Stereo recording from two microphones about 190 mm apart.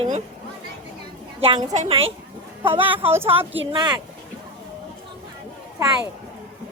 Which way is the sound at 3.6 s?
25° right (ahead or behind).